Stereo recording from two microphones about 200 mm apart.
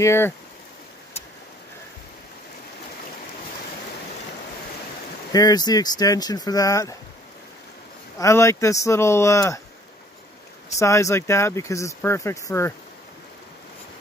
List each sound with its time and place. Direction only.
0.0 s speech: 15° left (ahead or behind)
5.3 s speech: 20° left (ahead or behind)
8.2 s speech: 15° left (ahead or behind)
10.8 s speech: 15° left (ahead or behind)